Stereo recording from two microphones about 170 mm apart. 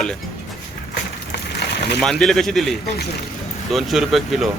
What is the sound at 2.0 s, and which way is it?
Speech, centre (ahead or behind).